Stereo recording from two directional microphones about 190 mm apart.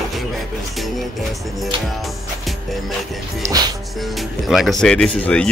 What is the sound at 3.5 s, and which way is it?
Music, 20° right (ahead or behind).